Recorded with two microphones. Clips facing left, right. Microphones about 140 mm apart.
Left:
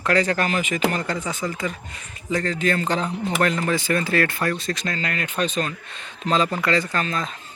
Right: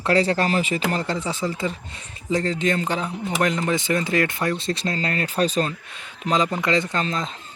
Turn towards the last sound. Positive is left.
turn(degrees=-20)  # may be behind; listen again after turning